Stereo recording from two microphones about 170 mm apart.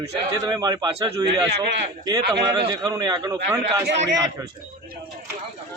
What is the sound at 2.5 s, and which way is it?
A man's voice, 25° right (ahead or behind).